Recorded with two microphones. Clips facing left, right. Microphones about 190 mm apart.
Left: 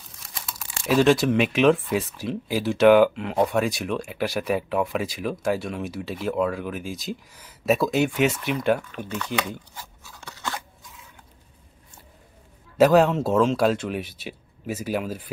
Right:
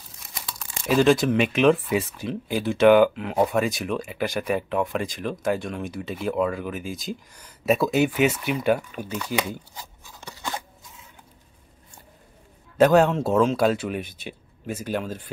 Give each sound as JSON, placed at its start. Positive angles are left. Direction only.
{"t": 0.8, "sound": "speech", "side_deg": 0}
{"t": 9.8, "sound": "scissors", "side_deg": -15}
{"t": 12.7, "sound": "speech", "side_deg": 0}